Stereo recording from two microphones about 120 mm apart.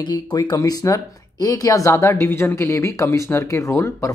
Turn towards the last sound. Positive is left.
turn(degrees=25)  # may be behind; listen again after turning